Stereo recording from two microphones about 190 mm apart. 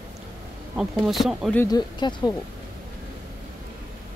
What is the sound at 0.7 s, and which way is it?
Speech, centre (ahead or behind).